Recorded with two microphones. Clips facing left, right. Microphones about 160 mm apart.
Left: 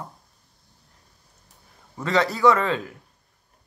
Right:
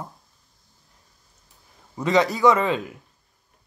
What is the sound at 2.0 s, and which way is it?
Speech, 15° right (ahead or behind).